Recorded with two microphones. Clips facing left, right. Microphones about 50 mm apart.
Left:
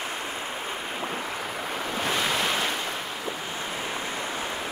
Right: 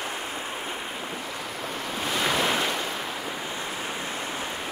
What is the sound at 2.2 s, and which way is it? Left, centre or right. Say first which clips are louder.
Waves: right 5 dB; centre.